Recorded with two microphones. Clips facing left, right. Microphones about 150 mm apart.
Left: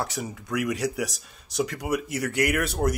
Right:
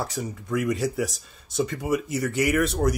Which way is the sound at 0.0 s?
Centre (ahead or behind).